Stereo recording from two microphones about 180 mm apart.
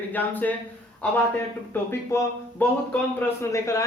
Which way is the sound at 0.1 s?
10° left (ahead or behind).